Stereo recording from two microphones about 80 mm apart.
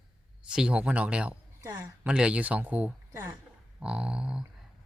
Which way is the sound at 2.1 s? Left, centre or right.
Centre.